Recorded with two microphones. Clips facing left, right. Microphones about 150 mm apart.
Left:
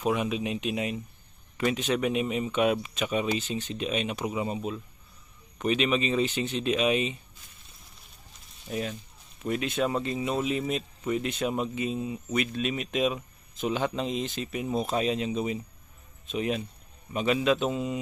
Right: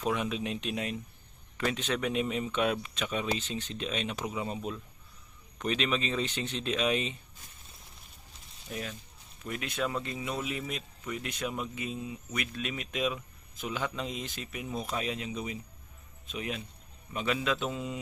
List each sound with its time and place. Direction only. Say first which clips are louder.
0.0 s speech: left 4 dB; 10° left (ahead or behind)
8.7 s speech: left 6 dB; 25° left (ahead or behind)